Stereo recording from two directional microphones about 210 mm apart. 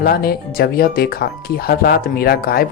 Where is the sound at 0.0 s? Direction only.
45° left (ahead or behind).